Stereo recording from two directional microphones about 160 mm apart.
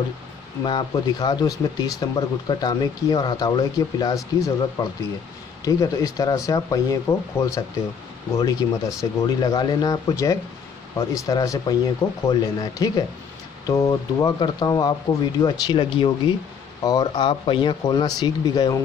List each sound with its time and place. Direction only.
0.7 s speech: 25° left (ahead or behind)